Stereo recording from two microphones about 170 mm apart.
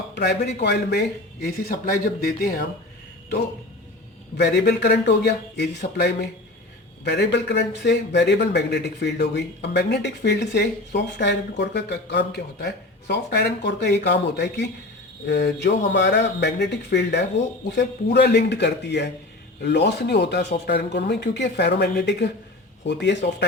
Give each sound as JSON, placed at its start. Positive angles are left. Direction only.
{"t": 0.1, "sound": "a man's voice", "side_deg": 75}
{"t": 1.5, "sound": "speech", "side_deg": 60}
{"t": 4.4, "sound": "a man's voice", "side_deg": 70}